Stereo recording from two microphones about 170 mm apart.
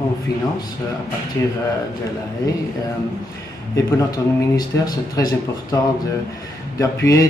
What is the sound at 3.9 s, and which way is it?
Speech, 20° left (ahead or behind).